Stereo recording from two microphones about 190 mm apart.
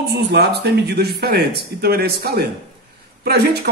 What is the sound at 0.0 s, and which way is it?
Speech, 60° right (ahead or behind).